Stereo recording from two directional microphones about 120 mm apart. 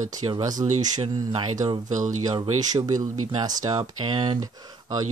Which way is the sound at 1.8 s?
90° right.